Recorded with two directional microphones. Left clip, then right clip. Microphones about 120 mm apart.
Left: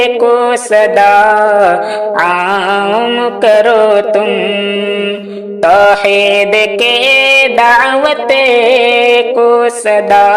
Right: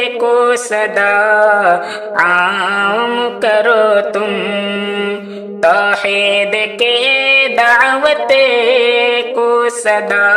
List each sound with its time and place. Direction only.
0.0 s mantra: 20° left (ahead or behind)
3.4 s mantra: 25° left (ahead or behind)
5.6 s mantra: 25° left (ahead or behind)